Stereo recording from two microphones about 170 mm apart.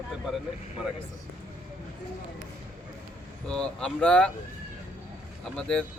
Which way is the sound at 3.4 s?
5° left (ahead or behind).